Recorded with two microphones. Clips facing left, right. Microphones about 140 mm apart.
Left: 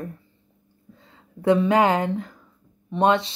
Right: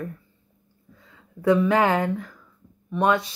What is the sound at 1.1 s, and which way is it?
Speech, 25° left (ahead or behind).